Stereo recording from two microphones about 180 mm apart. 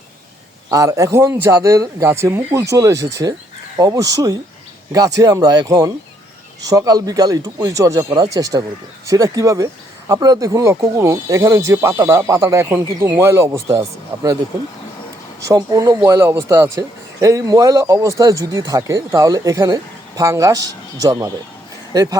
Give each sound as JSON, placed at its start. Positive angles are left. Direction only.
{"t": 0.7, "sound": "a man's voice", "side_deg": -20}
{"t": 15.4, "sound": "a man's voice", "side_deg": -20}